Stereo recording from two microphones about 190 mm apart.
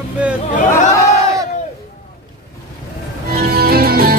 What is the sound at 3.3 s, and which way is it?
Music, 55° right (ahead or behind).